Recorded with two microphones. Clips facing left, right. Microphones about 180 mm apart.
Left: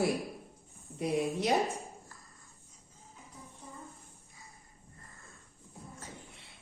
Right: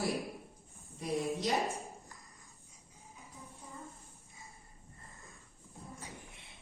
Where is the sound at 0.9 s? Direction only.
65° left (ahead or behind).